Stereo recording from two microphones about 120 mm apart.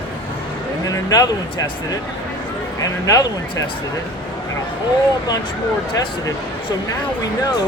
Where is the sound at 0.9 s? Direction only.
30° left (ahead or behind).